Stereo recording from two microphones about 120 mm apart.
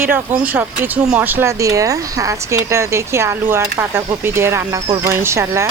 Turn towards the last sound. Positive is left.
turn(degrees=-25)  # may be behind; listen again after turning